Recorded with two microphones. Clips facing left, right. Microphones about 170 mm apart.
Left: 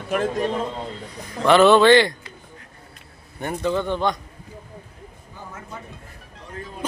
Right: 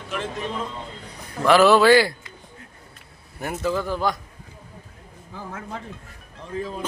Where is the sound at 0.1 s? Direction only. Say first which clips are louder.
Left 7 dB; 45° left (ahead or behind).